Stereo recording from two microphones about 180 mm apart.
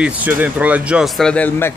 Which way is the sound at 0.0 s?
10° right (ahead or behind).